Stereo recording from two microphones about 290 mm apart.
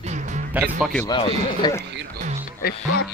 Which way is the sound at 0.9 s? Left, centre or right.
Centre.